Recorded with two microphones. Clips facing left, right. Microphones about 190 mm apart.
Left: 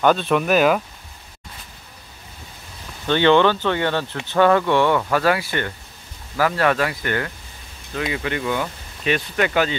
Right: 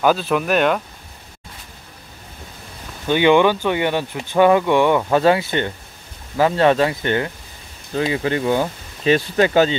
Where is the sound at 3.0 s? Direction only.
10° right (ahead or behind).